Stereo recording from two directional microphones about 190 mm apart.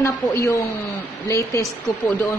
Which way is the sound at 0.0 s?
15° left (ahead or behind).